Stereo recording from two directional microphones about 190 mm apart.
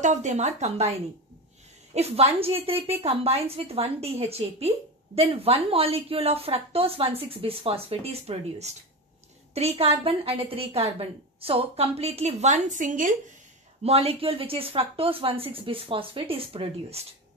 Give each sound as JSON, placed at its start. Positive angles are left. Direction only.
{"t": 0.0, "sound": "a woman's voice", "side_deg": -40}
{"t": 2.0, "sound": "a woman's voice", "side_deg": -35}
{"t": 13.8, "sound": "speech", "side_deg": -30}